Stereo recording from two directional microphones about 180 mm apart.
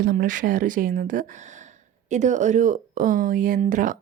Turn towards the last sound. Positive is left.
turn(degrees=-45)  # may be behind; listen again after turning